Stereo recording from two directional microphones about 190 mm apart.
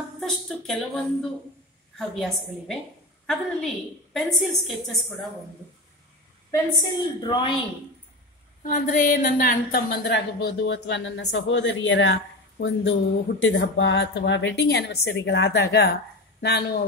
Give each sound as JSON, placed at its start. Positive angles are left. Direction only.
{"t": 0.2, "sound": "a woman's voice", "side_deg": 0}
{"t": 2.1, "sound": "a woman's voice", "side_deg": 0}
{"t": 6.5, "sound": "a woman's voice", "side_deg": 20}
{"t": 8.6, "sound": "a woman's voice", "side_deg": 45}